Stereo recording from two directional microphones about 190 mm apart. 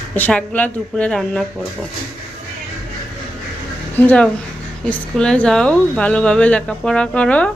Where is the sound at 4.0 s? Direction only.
5° left (ahead or behind).